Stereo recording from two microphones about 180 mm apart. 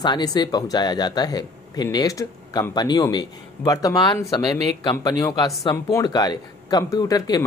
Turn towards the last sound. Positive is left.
turn(degrees=20)  # may be behind; listen again after turning